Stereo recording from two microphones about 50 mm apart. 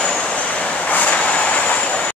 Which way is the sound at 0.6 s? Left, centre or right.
Left.